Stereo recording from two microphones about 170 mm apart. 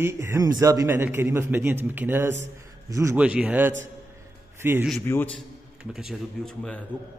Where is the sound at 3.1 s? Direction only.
5° right (ahead or behind).